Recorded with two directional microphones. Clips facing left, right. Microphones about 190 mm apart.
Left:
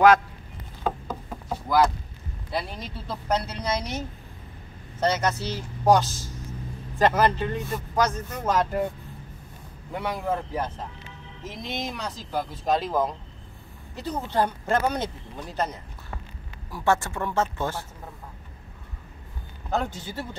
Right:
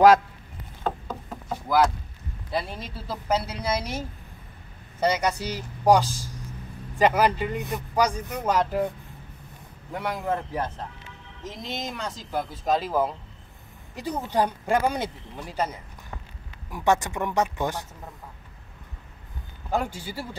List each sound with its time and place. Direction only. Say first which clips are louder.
0.8 s knock: left 1 dB; 5° left (ahead or behind)
2.5 s speech: right 1 dB; centre (ahead or behind)
5.0 s speech: even; 10° right (ahead or behind)
8.4 s speech: even; centre (ahead or behind)
9.9 s speech: even; 5° left (ahead or behind); by 17.8 s 15° right (ahead or behind)
19.7 s speech: even; 10° right (ahead or behind)